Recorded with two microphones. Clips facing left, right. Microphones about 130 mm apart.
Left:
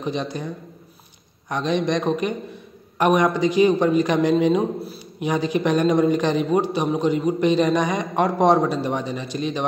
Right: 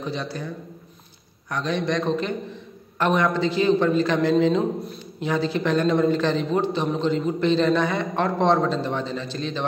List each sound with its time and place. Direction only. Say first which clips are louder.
0.0 s a man's voice: left 3 dB; 20° left (ahead or behind)
1.5 s a man's voice: left 3 dB; 20° left (ahead or behind)